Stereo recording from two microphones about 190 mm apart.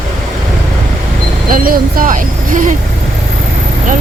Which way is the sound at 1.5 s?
45° right (ahead or behind).